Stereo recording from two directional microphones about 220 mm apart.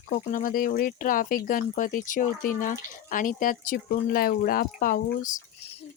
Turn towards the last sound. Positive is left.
turn(degrees=40)  # may be behind; listen again after turning